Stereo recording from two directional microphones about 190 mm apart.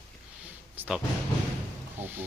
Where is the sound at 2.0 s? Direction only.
10° right (ahead or behind).